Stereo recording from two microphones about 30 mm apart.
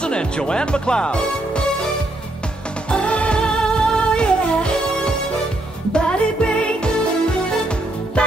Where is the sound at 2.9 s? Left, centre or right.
Left.